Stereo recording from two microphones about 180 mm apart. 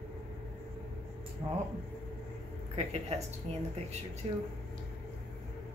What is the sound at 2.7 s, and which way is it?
Speech, 35° right (ahead or behind).